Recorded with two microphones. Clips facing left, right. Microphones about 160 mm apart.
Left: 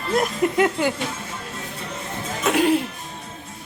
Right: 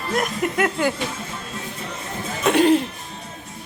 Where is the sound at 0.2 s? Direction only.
25° left (ahead or behind).